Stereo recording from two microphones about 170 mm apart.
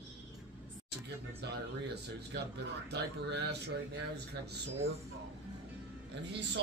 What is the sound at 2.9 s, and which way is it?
Speech, 85° right.